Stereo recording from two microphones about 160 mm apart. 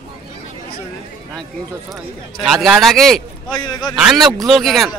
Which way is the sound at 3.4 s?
25° left (ahead or behind).